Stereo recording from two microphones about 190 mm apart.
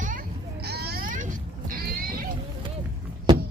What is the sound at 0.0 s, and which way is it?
Sheep, 45° right (ahead or behind).